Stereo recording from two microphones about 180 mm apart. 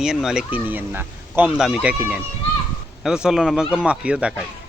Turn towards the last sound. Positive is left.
turn(degrees=-5)  # may be behind; listen again after turning